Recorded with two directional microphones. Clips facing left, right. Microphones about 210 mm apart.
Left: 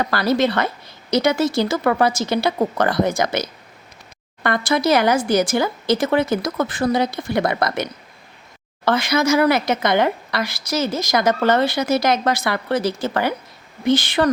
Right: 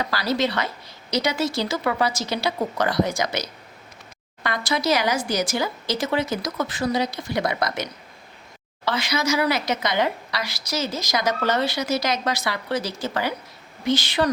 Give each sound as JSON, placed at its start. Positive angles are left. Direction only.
{"t": 0.0, "sound": "speech", "side_deg": 55}